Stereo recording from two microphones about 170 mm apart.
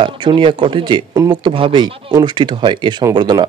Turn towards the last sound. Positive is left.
turn(degrees=-25)  # may be behind; listen again after turning